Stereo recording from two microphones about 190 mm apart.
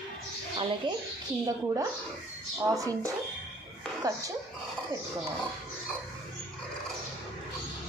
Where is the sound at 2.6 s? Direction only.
15° right (ahead or behind).